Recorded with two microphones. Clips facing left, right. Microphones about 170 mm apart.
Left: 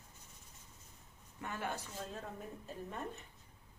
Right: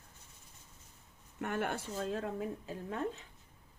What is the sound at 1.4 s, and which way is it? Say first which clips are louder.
Speech: right 6 dB; 60° right (ahead or behind).